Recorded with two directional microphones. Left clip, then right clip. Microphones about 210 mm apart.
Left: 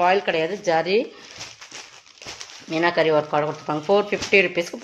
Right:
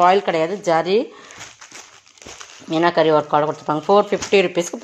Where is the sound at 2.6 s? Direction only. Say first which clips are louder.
Right 4 dB; 35° right (ahead or behind).